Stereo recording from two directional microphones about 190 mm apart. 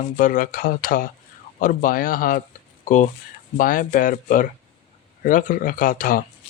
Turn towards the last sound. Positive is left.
turn(degrees=45)  # may be behind; listen again after turning